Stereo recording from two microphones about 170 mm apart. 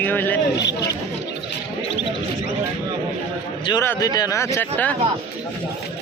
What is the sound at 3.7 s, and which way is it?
A man's voice, 20° left (ahead or behind).